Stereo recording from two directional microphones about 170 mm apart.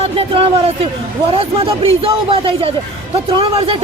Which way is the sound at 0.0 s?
30° right (ahead or behind).